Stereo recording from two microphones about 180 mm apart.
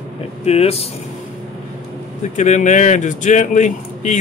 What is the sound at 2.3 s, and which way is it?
Speech, 40° left (ahead or behind).